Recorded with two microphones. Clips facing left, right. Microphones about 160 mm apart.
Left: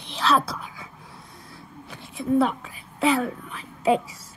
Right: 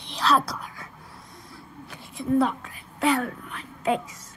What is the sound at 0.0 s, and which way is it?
Whispering, centre (ahead or behind).